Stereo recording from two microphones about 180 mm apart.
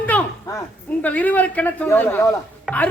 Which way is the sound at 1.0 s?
10° left (ahead or behind).